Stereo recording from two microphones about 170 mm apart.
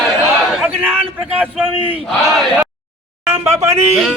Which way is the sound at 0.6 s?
10° right (ahead or behind).